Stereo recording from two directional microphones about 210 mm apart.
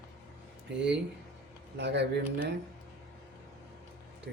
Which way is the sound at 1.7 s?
55° right (ahead or behind).